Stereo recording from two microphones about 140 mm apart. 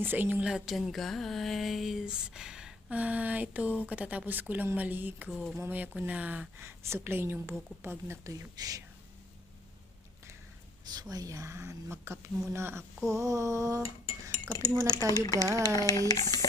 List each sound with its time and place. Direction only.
0.0 s speech: 15° right (ahead or behind)
10.9 s speech: 25° right (ahead or behind)
14.8 s speech: 25° left (ahead or behind)
15.4 s speech: 25° right (ahead or behind)
15.9 s speech: 25° left (ahead or behind)